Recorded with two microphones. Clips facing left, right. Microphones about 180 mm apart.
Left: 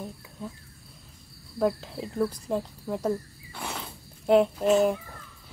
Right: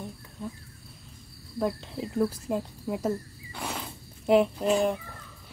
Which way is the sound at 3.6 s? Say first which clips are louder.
Right 1 dB; centre (ahead or behind).